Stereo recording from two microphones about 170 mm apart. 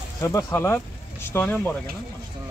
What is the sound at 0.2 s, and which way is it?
Speech, 15° left (ahead or behind).